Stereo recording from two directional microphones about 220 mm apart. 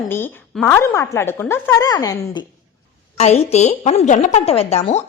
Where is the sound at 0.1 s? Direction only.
10° left (ahead or behind).